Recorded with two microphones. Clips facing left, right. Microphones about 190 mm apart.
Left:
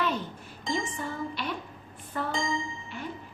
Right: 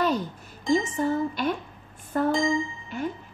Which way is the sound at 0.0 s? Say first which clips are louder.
Right 5 dB; 40° right (ahead or behind).